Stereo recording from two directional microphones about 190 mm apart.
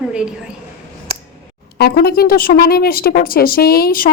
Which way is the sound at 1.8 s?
55° left (ahead or behind).